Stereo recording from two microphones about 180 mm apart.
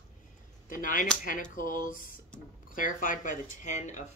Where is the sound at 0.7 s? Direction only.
50° left (ahead or behind).